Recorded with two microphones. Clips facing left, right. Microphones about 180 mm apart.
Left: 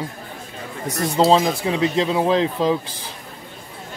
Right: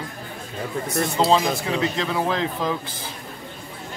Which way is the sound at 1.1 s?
25° left (ahead or behind).